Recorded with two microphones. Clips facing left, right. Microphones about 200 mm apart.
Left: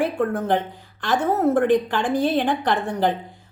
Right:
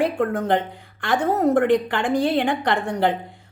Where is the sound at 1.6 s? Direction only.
65° right (ahead or behind).